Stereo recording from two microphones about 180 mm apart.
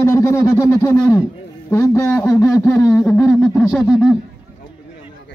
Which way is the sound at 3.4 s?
Centre (ahead or behind).